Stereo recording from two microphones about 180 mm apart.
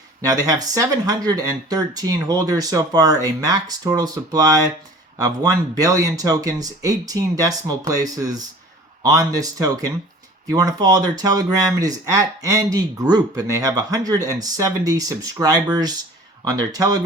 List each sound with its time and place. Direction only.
0.3 s speech: 20° right (ahead or behind)